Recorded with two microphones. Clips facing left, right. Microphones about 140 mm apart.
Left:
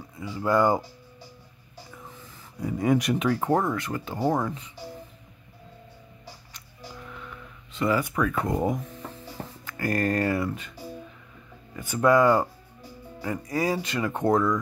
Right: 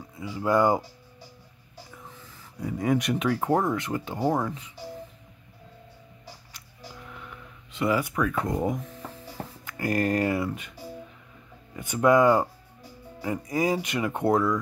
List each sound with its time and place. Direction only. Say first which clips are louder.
0.1 s speech: even; 10° right (ahead or behind)
2.6 s speech: left 2 dB; 5° left (ahead or behind)
3.7 s speech: right 1 dB; 20° right (ahead or behind)
4.2 s speech: left 1 dB; centre (ahead or behind)
7.1 s a sound: left 2 dB; 10° right (ahead or behind)
8.1 s speech: left 1 dB; centre (ahead or behind)
9.7 s speech: even; 15° right (ahead or behind)
11.7 s speech: even; 15° right (ahead or behind)